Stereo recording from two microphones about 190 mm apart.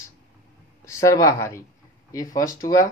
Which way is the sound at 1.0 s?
15° left (ahead or behind).